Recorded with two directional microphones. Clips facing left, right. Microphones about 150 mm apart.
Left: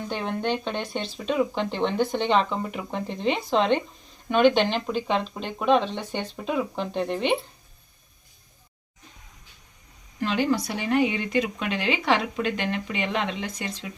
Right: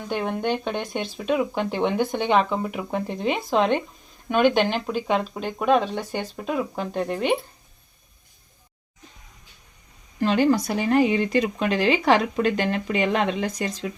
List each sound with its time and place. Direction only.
0.1 s speech: 10° right (ahead or behind)
10.2 s speech: 45° right (ahead or behind)